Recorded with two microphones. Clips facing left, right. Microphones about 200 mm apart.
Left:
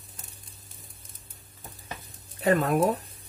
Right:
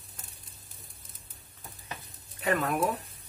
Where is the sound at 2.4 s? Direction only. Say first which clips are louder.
Left 5 dB; 40° left (ahead or behind).